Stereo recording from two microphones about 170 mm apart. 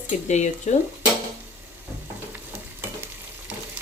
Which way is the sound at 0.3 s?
45° left (ahead or behind).